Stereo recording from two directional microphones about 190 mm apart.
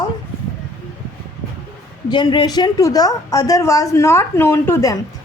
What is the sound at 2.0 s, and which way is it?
A woman's voice, 25° left (ahead or behind).